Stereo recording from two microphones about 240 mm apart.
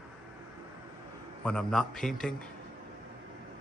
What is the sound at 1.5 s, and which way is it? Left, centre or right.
Speech, centre.